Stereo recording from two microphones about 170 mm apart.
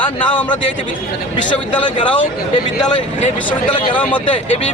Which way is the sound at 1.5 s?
30° left (ahead or behind).